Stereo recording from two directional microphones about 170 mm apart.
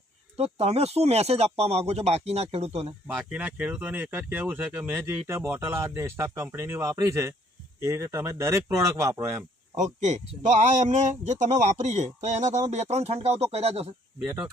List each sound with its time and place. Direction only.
0.3 s speech: 35° right (ahead or behind)
3.2 s speech: 10° right (ahead or behind)
9.7 s speech: 45° right (ahead or behind)